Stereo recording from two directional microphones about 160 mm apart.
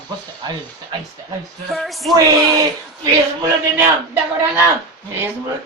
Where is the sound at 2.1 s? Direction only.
20° right (ahead or behind).